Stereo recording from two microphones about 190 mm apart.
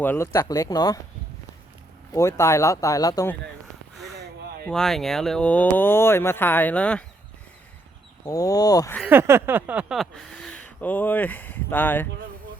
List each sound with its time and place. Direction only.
0.0 s speech: 10° left (ahead or behind)
2.1 s speech: 15° left (ahead or behind)
4.7 s speech: centre (ahead or behind)
8.3 s speech: 20° left (ahead or behind)
9.0 s speech: 10° right (ahead or behind); by 12.0 s 10° left (ahead or behind)